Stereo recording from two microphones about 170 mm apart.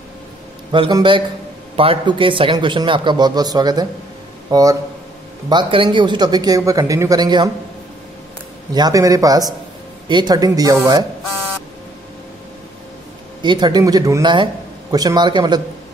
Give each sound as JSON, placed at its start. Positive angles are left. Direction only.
{"t": 0.7, "sound": "a man's voice", "side_deg": -25}
{"t": 8.7, "sound": "a man's voice", "side_deg": -20}
{"t": 13.4, "sound": "a man's voice", "side_deg": -25}